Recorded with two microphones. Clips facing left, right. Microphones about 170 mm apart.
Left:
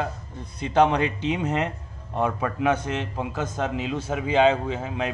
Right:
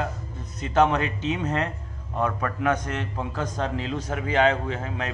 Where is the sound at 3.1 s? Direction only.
10° left (ahead or behind).